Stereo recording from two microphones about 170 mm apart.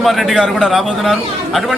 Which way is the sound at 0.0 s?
Centre (ahead or behind).